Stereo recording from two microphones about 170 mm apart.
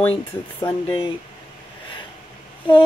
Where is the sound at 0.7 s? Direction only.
30° left (ahead or behind).